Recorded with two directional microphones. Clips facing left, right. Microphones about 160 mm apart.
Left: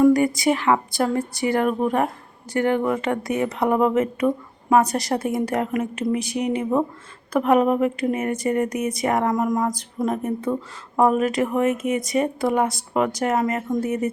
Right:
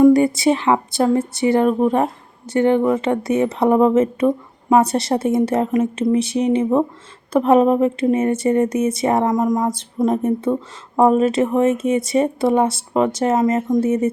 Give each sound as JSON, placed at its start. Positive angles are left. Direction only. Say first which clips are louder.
{"t": 0.0, "sound": "a woman's voice", "louder": "right 4 dB", "side_deg": -25}